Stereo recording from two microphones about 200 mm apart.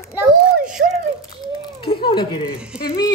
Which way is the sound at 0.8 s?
55° right (ahead or behind).